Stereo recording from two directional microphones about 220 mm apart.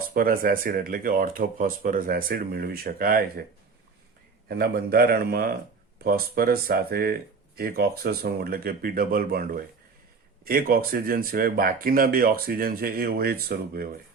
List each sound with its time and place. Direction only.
0.1 s speech: 40° right (ahead or behind)
4.4 s speech: 45° right (ahead or behind)